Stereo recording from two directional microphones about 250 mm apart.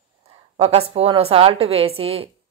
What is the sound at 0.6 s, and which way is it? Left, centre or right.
Speech, right.